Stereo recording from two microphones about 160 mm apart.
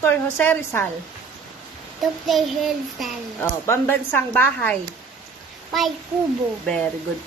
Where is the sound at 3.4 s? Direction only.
15° left (ahead or behind).